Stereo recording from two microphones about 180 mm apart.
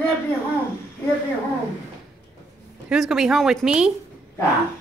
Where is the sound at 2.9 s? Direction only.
5° right (ahead or behind).